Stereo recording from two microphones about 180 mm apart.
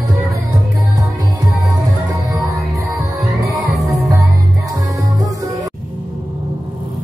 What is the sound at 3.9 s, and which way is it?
Music, 20° right (ahead or behind).